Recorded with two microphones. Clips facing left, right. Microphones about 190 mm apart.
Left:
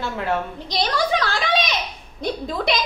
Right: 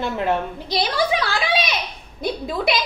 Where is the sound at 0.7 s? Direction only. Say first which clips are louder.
Right 1 dB; 5° right (ahead or behind).